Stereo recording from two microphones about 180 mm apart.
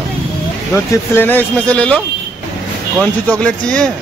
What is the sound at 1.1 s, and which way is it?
Speech, 10° left (ahead or behind).